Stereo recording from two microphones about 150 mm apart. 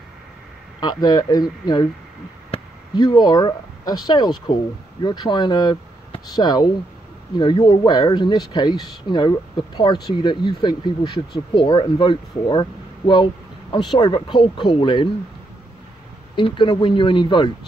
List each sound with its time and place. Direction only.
0.7 s speech: 25° left (ahead or behind)
16.3 s speech: 35° left (ahead or behind)